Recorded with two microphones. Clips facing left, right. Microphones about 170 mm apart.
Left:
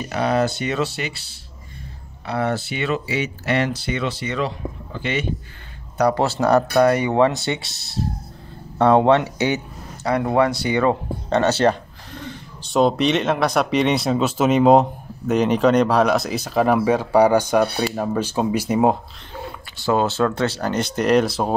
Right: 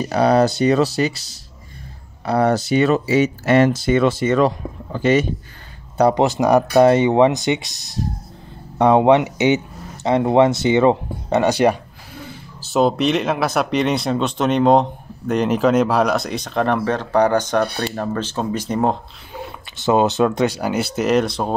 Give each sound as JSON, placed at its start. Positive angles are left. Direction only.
{"t": 0.0, "sound": "speech", "side_deg": -35}
{"t": 5.9, "sound": "speech", "side_deg": -20}
{"t": 19.8, "sound": "speech", "side_deg": -20}